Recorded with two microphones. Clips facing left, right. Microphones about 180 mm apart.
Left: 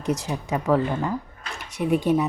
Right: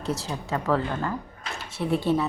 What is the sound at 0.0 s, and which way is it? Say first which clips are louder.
A woman's voice: left 4 dB; 15° left (ahead or behind).